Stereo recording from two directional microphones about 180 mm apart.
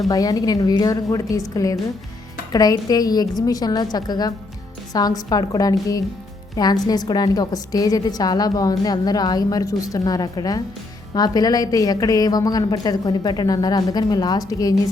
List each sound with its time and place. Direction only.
0.1 s a woman's voice: 20° left (ahead or behind)